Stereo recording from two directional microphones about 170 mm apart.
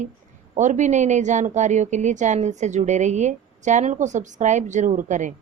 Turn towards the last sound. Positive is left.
turn(degrees=-45)  # may be behind; listen again after turning